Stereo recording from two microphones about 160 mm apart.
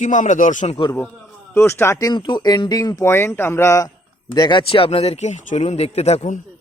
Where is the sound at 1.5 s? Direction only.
15° left (ahead or behind); by 6.4 s 45° left (ahead or behind).